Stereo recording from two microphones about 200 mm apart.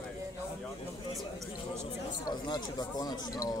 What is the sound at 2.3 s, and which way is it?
Speech, 20° left (ahead or behind).